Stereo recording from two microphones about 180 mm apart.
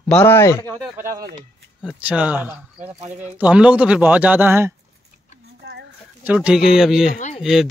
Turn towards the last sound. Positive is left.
turn(degrees=40)  # may be behind; listen again after turning